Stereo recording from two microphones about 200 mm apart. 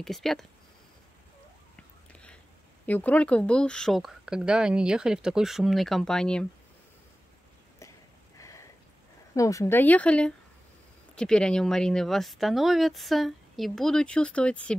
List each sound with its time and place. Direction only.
0.0 s speech: centre (ahead or behind)
1.8 s whispering: 5° left (ahead or behind)
2.9 s speech: 5° left (ahead or behind)
8.4 s a sound: 15° left (ahead or behind)
9.3 s speech: 15° left (ahead or behind)